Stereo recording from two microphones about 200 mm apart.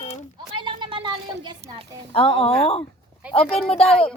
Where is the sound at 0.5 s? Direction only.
25° right (ahead or behind).